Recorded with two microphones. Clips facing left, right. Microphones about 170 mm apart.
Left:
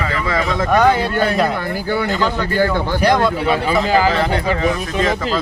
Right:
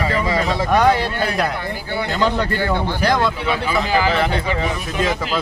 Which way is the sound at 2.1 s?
45° left (ahead or behind).